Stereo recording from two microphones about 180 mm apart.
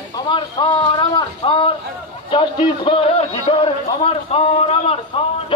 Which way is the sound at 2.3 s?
25° left (ahead or behind).